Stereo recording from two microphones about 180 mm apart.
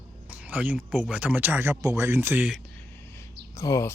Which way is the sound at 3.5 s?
15° left (ahead or behind).